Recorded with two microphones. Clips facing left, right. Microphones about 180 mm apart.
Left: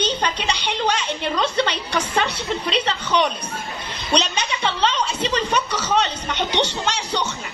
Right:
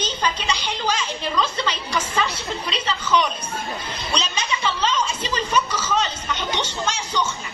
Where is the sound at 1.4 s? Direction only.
65° left (ahead or behind).